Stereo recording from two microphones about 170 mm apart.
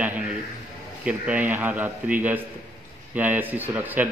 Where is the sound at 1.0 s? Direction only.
10° right (ahead or behind).